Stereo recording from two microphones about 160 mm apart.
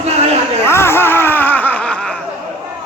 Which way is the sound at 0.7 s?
15° left (ahead or behind).